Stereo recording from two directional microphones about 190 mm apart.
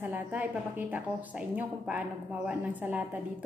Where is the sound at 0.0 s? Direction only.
10° right (ahead or behind).